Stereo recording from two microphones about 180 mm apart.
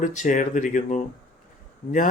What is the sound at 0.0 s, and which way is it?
Speech, 45° left (ahead or behind).